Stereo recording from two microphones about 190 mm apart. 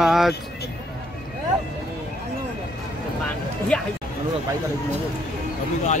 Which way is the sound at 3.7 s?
5° left (ahead or behind).